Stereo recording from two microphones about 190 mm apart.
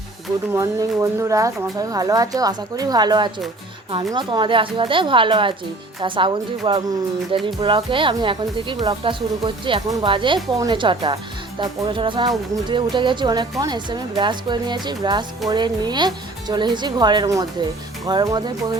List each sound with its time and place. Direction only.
0.5 s speech: 15° right (ahead or behind)